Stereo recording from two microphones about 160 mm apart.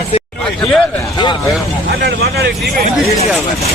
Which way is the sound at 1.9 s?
85° right.